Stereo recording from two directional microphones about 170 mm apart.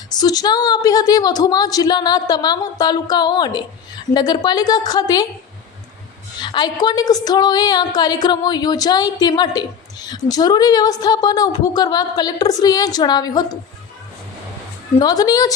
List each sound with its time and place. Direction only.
0.1 s a woman's voice: 25° left (ahead or behind)
6.4 s a woman's voice: 25° left (ahead or behind)
14.9 s a woman's voice: 20° left (ahead or behind)